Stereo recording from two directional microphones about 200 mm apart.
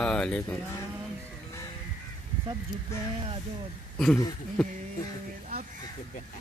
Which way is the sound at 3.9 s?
Centre (ahead or behind).